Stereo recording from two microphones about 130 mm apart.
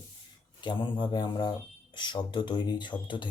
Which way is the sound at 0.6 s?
35° left (ahead or behind).